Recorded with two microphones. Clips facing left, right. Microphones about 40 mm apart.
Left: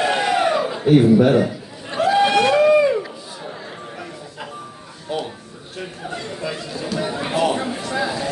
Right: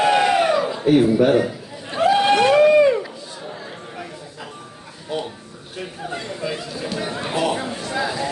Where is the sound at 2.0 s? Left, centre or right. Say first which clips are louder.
Even; right.